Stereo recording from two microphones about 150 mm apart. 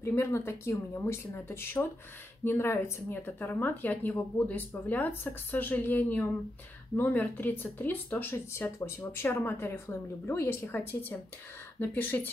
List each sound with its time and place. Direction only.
0.0 s speech: 15° left (ahead or behind)